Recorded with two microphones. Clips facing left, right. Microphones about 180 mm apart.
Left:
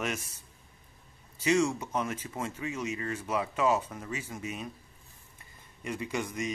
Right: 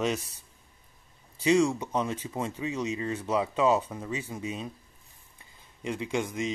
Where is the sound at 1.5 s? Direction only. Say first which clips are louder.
Right 3 dB; 15° right (ahead or behind).